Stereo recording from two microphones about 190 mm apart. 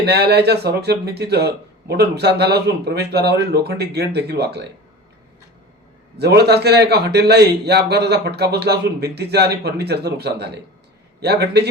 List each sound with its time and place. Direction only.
0.0 s speech: 60° right (ahead or behind)
6.1 s speech: 60° right (ahead or behind)